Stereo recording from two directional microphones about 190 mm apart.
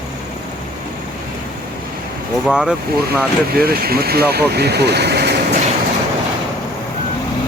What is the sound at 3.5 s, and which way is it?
Speech, 55° right (ahead or behind).